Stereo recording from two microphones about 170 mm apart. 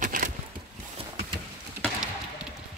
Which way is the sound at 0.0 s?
50° right (ahead or behind).